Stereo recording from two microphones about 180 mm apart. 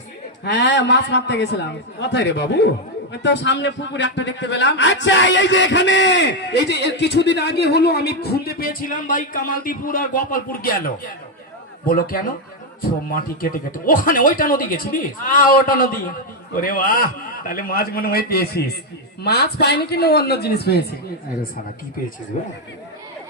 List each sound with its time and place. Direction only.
0.4 s a man's voice: 70° left (ahead or behind)
22.3 s speech: 45° left (ahead or behind)